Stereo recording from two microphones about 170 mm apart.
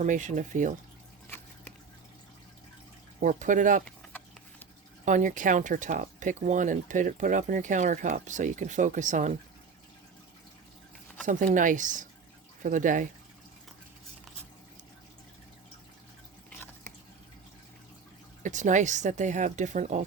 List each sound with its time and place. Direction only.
0.0 s speech: 45° right (ahead or behind)
3.2 s speech: 50° right (ahead or behind)
5.0 s speech: 50° right (ahead or behind)
11.3 s speech: 50° right (ahead or behind)
16.5 s drip: 10° left (ahead or behind)
18.4 s speech: 45° right (ahead or behind)